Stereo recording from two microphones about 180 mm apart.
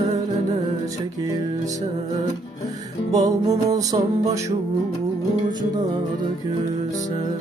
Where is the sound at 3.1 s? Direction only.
20° right (ahead or behind).